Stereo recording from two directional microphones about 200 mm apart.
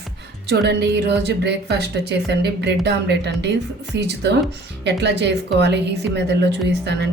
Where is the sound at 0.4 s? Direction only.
55° right (ahead or behind).